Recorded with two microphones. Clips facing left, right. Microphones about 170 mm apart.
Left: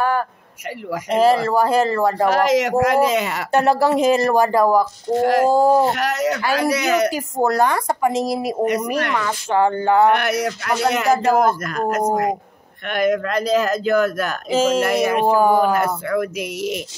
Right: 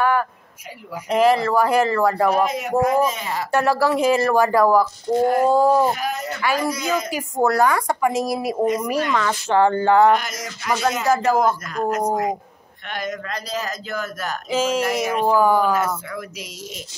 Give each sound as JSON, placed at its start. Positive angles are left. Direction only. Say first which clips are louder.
{"t": 0.0, "sound": "a sound", "louder": "even", "side_deg": 35}
{"t": 1.1, "sound": "speech", "louder": "left 1 dB", "side_deg": 35}
{"t": 2.2, "sound": "speech", "louder": "left 3 dB", "side_deg": 90}
{"t": 3.5, "sound": "speech", "louder": "left 3 dB", "side_deg": 20}
{"t": 5.2, "sound": "speech", "louder": "left 2 dB", "side_deg": 75}
{"t": 5.5, "sound": "speech", "louder": "left 2 dB", "side_deg": 30}
{"t": 5.9, "sound": "speech", "louder": "left 4 dB", "side_deg": 75}
{"t": 6.5, "sound": "speech", "louder": "left 1 dB", "side_deg": 75}
{"t": 7.4, "sound": "speech", "louder": "even", "side_deg": 30}
{"t": 9.1, "sound": "speech", "louder": "right 1 dB", "side_deg": 10}
{"t": 10.1, "sound": "speech", "louder": "left 5 dB", "side_deg": 65}
{"t": 15.2, "sound": "speech", "louder": "even", "side_deg": 25}
{"t": 15.6, "sound": "speech", "louder": "left 2 dB", "side_deg": 60}